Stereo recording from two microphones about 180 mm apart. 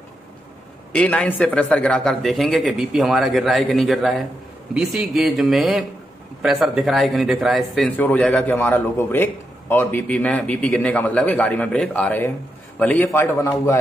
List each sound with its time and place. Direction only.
0.9 s speech: 5° left (ahead or behind)